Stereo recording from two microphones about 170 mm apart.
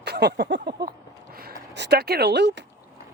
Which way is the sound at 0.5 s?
70° right (ahead or behind).